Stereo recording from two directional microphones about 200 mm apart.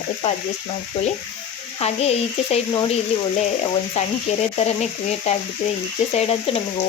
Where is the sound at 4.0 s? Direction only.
35° left (ahead or behind).